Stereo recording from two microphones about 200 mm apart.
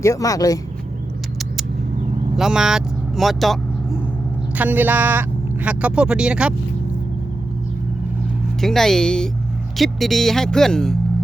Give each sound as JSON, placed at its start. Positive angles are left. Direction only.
{"t": 0.0, "sound": "speech", "side_deg": 15}
{"t": 2.3, "sound": "a man's voice", "side_deg": -5}
{"t": 8.6, "sound": "speech", "side_deg": 0}